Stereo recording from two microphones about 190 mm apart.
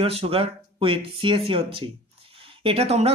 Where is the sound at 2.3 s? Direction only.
30° right (ahead or behind).